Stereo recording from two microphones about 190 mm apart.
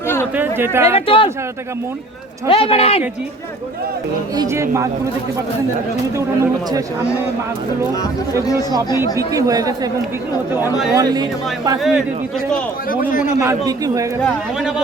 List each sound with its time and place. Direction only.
0.3 s a man's voice: 10° right (ahead or behind)
0.9 s speech: 25° left (ahead or behind)
2.5 s speech: 30° left (ahead or behind)
4.4 s a man's voice: 15° right (ahead or behind)
6.1 s a man's voice: 15° right (ahead or behind)
9.1 s speech: 20° right (ahead or behind)
10.9 s speech: 20° right (ahead or behind)
11.8 s a man's voice: centre (ahead or behind)
12.9 s a man's voice: 45° left (ahead or behind)
13.4 s a man's voice: 20° right (ahead or behind)